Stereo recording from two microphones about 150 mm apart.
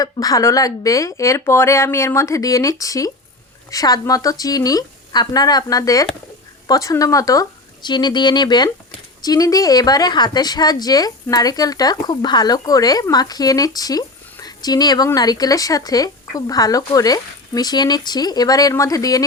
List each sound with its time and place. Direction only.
0.0 s speech: 25° left (ahead or behind)